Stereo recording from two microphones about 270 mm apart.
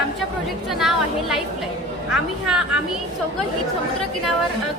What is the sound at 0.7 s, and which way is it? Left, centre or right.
A woman's voice, centre.